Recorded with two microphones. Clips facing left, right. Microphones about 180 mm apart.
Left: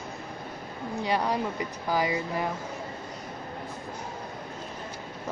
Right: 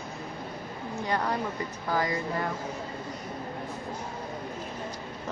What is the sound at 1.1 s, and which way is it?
Speech, 15° left (ahead or behind).